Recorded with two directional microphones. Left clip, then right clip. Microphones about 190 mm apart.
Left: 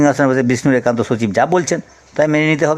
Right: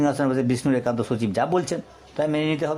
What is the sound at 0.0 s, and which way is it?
Speech, 25° left (ahead or behind).